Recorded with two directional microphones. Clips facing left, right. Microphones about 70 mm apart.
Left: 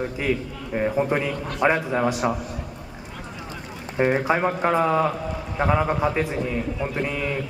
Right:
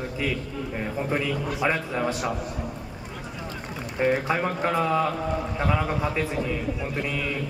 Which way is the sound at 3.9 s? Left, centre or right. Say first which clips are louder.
Left 3 dB; left.